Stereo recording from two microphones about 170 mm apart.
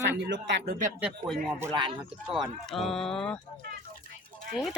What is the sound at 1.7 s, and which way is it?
Speech, 30° right (ahead or behind).